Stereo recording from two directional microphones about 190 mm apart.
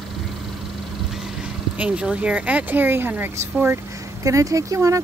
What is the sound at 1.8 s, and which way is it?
A woman's voice, 5° right (ahead or behind).